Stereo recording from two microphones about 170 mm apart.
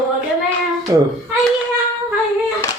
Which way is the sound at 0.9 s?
25° right (ahead or behind).